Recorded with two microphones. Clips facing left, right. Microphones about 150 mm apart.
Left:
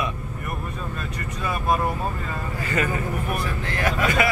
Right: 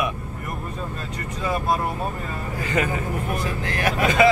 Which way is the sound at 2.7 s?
20° right (ahead or behind).